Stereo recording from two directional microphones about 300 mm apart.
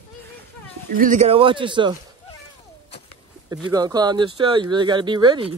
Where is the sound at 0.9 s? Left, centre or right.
Right.